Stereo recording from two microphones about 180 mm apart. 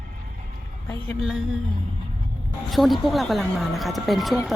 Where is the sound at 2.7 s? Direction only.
Centre (ahead or behind).